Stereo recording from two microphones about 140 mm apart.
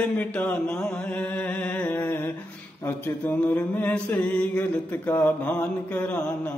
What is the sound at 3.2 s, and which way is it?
Mantra, 10° left (ahead or behind).